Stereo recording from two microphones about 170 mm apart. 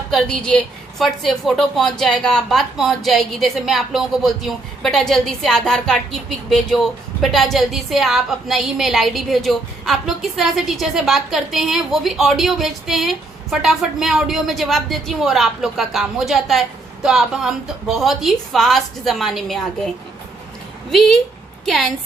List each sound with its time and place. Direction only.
0.1 s a woman's voice: 5° left (ahead or behind)
21.7 s a woman's voice: centre (ahead or behind)